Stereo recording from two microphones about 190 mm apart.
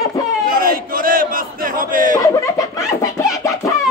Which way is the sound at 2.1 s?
20° left (ahead or behind).